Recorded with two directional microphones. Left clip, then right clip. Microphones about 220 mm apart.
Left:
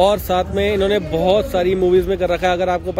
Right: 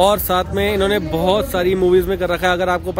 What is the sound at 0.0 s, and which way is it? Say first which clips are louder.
Speech: even; 5° left (ahead or behind).